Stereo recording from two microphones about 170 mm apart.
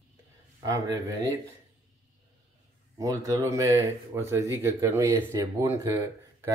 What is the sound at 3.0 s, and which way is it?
Speech, 20° right (ahead or behind).